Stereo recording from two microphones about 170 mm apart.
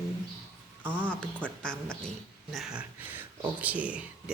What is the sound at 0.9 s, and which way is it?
Speech, 10° left (ahead or behind).